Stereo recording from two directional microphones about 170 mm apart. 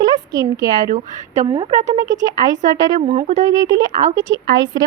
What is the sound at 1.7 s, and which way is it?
Speech, 40° right (ahead or behind).